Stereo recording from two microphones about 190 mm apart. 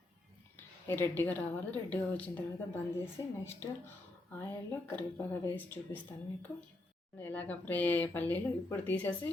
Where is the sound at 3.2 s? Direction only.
20° left (ahead or behind).